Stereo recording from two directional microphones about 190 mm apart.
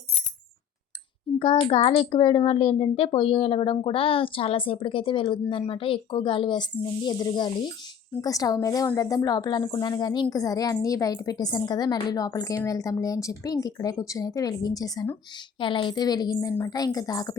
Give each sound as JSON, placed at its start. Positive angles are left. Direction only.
{"t": 1.4, "sound": "a child's voice", "side_deg": 30}